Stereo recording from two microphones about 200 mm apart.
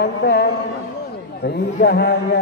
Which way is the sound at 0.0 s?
55° left (ahead or behind).